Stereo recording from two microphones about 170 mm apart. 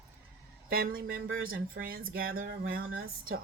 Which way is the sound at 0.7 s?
60° right (ahead or behind).